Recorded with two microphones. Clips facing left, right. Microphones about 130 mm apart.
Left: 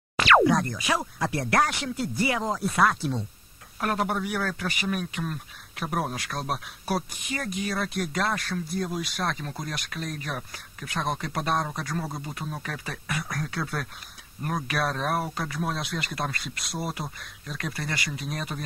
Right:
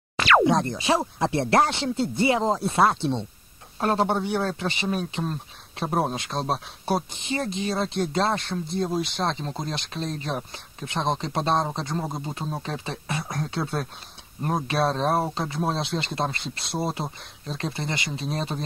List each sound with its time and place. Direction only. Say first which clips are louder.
0.5 s speech: right 3 dB; 25° right (ahead or behind)